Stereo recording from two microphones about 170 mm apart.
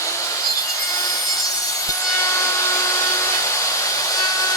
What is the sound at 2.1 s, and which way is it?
Vacuum cleaner, 15° left (ahead or behind).